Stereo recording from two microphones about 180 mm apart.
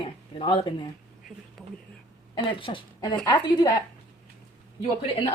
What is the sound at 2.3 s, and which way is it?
Speech, 25° left (ahead or behind).